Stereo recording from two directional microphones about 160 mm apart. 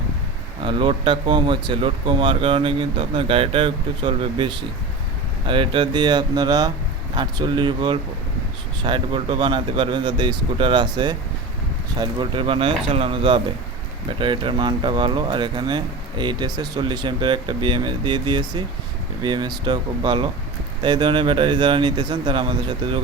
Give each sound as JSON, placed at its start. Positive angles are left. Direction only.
{"t": 0.6, "sound": "speech", "side_deg": -30}